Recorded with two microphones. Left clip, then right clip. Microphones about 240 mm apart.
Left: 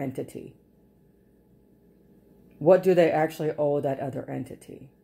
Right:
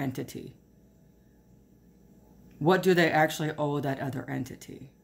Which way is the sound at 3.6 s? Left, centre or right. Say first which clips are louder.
Left 6 dB; right.